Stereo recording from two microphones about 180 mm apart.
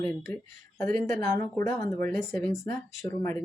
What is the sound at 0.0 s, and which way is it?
Speech, 15° left (ahead or behind).